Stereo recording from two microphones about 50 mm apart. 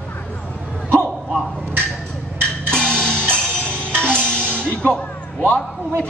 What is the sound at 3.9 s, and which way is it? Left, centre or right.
Music, right.